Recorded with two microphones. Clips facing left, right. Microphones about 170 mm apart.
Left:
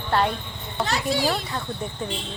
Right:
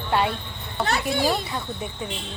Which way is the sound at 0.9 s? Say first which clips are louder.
Right 1 dB; 50° right (ahead or behind).